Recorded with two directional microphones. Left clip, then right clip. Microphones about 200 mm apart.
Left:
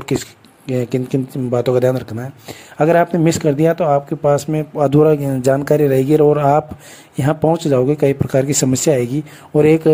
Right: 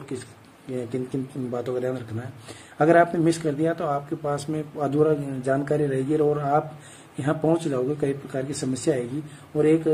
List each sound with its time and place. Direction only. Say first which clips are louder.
0.7 s speech: left 10 dB; 45° left (ahead or behind)